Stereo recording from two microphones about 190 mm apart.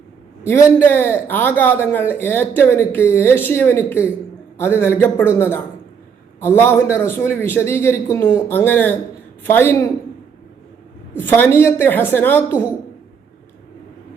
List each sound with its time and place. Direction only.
0.4 s speech: 15° left (ahead or behind)
11.2 s speech: 10° left (ahead or behind)